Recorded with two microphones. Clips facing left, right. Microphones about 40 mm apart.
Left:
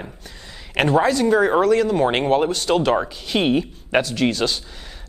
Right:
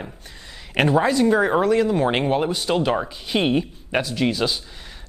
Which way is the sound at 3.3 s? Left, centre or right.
Centre.